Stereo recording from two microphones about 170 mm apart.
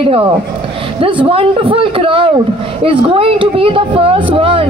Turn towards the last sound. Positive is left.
turn(degrees=-30)  # may be behind; listen again after turning